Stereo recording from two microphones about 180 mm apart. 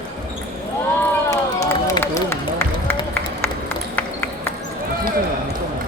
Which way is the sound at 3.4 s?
10° left (ahead or behind).